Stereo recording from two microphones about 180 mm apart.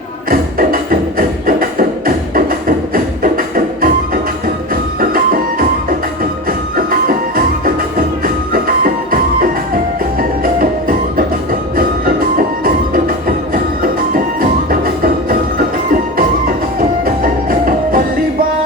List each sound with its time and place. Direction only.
0.3 s music: 50° right (ahead or behind)
2.0 s music: 50° right (ahead or behind)
6.7 s music: 55° right (ahead or behind)
10.2 s music: 50° right (ahead or behind)
17.5 s music: 50° right (ahead or behind)